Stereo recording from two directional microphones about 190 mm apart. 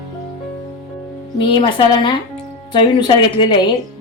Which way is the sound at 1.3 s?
25° left (ahead or behind).